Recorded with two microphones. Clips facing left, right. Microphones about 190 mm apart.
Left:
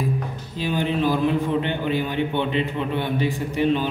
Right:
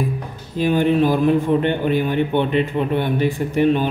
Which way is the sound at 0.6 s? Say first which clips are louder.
Right 7 dB; 50° right (ahead or behind).